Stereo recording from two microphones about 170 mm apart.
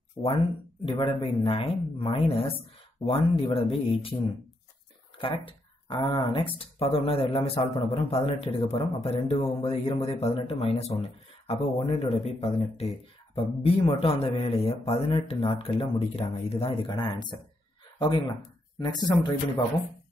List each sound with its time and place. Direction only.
0.2 s speech: 25° left (ahead or behind)
5.1 s speech: 30° left (ahead or behind)
18.8 s speech: 25° left (ahead or behind)